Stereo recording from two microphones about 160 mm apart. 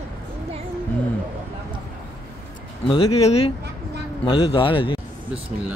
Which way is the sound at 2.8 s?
35° left (ahead or behind).